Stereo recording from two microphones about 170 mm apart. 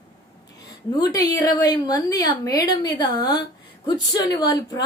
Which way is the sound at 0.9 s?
25° left (ahead or behind).